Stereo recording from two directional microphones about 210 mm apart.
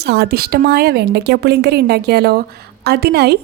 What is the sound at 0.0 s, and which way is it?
A woman's voice, 50° right (ahead or behind).